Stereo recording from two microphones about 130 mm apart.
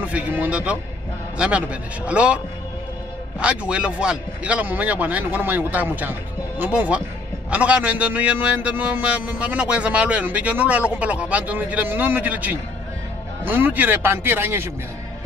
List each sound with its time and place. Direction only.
0.0 s a man's voice: 10° right (ahead or behind)